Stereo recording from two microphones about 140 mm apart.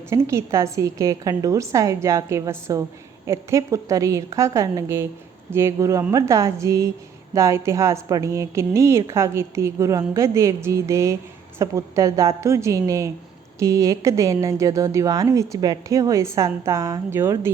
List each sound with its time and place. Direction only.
0.1 s a woman's voice: 20° right (ahead or behind)